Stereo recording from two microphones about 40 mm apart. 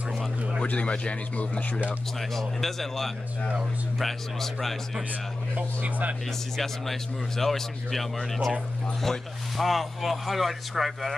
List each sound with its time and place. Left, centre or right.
0.7 s speech: left
2.3 s speech: centre
6.5 s speech: centre